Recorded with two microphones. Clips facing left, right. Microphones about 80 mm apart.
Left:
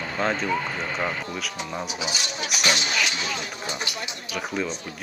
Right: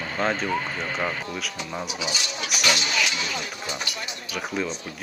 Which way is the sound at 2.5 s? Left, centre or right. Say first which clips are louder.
Even; left.